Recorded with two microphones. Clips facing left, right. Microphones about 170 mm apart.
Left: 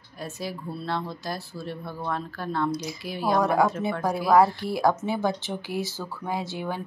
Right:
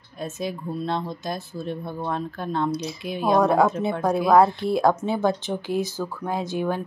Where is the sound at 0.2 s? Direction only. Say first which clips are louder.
Right 4 dB; 20° right (ahead or behind).